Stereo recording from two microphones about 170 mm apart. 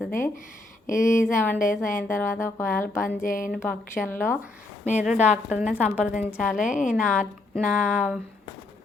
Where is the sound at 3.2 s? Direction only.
50° left (ahead or behind).